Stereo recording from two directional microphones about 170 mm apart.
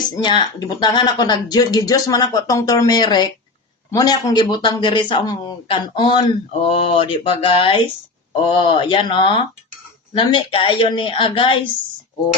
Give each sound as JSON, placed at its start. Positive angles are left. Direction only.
{"t": 0.2, "sound": "speech", "side_deg": 25}
{"t": 6.7, "sound": "mantra", "side_deg": 35}
{"t": 8.4, "sound": "speech", "side_deg": 30}